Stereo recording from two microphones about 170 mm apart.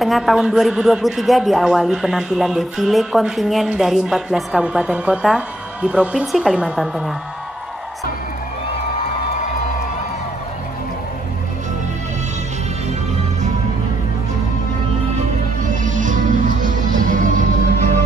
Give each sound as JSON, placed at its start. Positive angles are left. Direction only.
{"t": 0.0, "sound": "a man's voice", "side_deg": 0}
{"t": 15.6, "sound": "music", "side_deg": -50}